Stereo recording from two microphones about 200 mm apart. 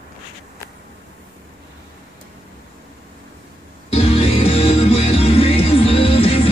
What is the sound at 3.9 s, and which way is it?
Music, 30° left (ahead or behind).